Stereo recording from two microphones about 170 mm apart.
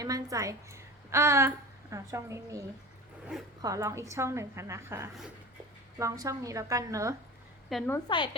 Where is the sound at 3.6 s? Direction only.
20° right (ahead or behind).